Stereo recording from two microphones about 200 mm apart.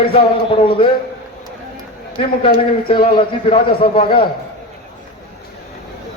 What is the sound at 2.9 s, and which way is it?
A man's voice, 25° left (ahead or behind).